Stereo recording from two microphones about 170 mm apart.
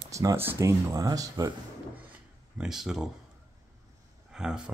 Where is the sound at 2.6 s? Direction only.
Centre (ahead or behind).